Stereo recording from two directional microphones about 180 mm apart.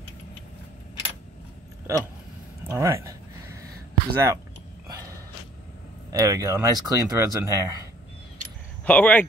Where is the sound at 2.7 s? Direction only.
15° right (ahead or behind).